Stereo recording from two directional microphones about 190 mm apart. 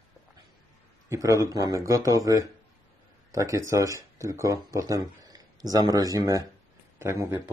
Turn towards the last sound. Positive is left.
turn(degrees=-15)  # may be behind; listen again after turning